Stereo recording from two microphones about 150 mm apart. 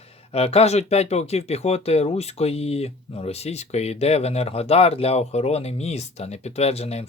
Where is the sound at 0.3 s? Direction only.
45° left (ahead or behind).